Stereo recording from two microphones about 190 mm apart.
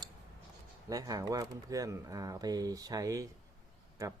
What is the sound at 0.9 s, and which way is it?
Speech, 20° right (ahead or behind).